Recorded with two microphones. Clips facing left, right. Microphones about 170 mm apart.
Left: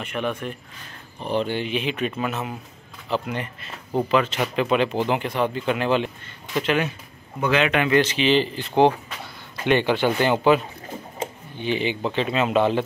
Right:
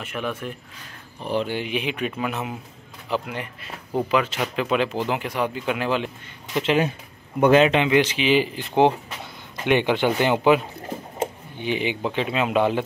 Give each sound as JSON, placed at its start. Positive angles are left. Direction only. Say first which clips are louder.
{"t": 0.0, "sound": "speech", "louder": "left 2 dB", "side_deg": -5}
{"t": 6.5, "sound": "speech", "louder": "right 2 dB", "side_deg": -25}
{"t": 7.3, "sound": "speech", "louder": "right 6 dB", "side_deg": -50}
{"t": 7.7, "sound": "speech", "louder": "even", "side_deg": -15}